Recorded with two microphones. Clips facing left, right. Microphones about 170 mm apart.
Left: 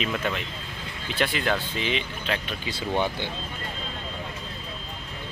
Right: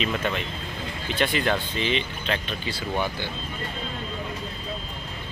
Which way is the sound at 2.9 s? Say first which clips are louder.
Left 2 dB; 20° left (ahead or behind).